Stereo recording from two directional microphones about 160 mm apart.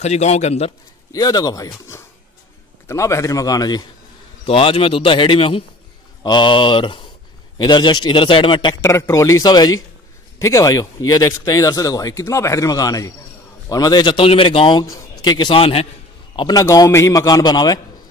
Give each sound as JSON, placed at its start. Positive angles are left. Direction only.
{"t": 0.0, "sound": "a man's voice", "side_deg": 45}
{"t": 1.1, "sound": "speech", "side_deg": 25}
{"t": 2.9, "sound": "speech", "side_deg": 20}
{"t": 4.5, "sound": "speech", "side_deg": 35}
{"t": 8.8, "sound": "speech", "side_deg": 15}
{"t": 16.3, "sound": "speech", "side_deg": 25}